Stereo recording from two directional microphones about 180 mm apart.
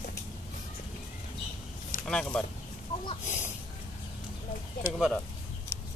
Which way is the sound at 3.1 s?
40° left (ahead or behind).